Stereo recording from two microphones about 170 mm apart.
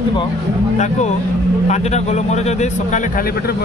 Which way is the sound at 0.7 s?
45° left (ahead or behind).